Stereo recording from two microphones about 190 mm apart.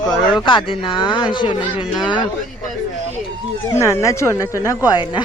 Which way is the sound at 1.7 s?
5° right (ahead or behind).